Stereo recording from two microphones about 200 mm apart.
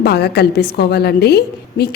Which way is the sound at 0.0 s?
50° left (ahead or behind).